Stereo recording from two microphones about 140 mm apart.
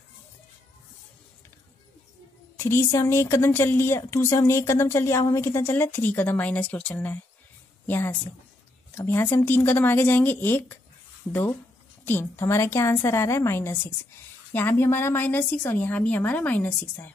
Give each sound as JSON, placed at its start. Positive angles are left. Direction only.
{"t": 2.6, "sound": "a woman's voice", "side_deg": 20}
{"t": 12.0, "sound": "a woman's voice", "side_deg": 15}